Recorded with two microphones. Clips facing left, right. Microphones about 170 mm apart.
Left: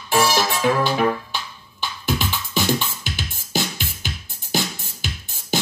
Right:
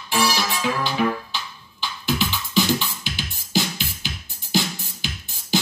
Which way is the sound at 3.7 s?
50° left (ahead or behind).